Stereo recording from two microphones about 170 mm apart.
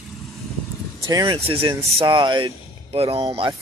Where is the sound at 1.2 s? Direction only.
30° right (ahead or behind).